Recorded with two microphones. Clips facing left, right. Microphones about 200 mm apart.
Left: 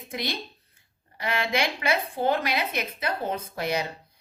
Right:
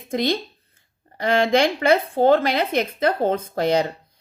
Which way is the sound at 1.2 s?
50° right (ahead or behind).